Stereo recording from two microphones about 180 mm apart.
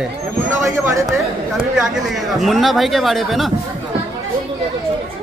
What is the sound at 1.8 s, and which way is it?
A woman's voice, centre (ahead or behind).